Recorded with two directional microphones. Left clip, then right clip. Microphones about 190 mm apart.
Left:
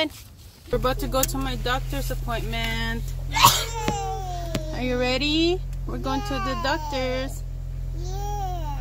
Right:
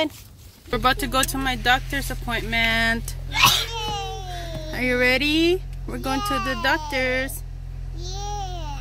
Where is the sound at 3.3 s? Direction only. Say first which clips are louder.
Even; 55° left (ahead or behind).